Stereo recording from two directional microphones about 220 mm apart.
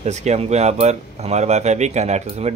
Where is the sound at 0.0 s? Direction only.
30° right (ahead or behind).